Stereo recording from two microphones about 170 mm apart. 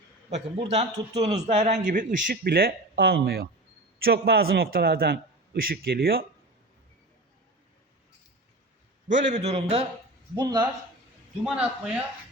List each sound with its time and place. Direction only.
0.3 s a man's voice: 35° right (ahead or behind); by 6.2 s 60° right (ahead or behind)
9.3 s a man's voice: 40° right (ahead or behind)
10.3 s speech: 25° right (ahead or behind)
11.4 s a man's voice: 5° right (ahead or behind)